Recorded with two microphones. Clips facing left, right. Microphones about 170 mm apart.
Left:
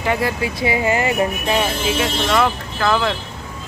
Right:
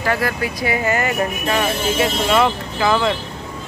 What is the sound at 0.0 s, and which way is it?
Speech, 20° left (ahead or behind).